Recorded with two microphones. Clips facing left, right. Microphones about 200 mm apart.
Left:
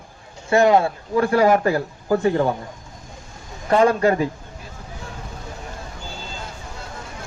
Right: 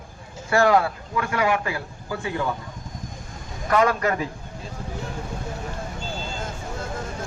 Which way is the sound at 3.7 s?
30° left (ahead or behind).